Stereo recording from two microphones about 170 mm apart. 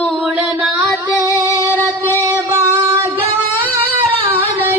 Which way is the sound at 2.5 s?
15° right (ahead or behind).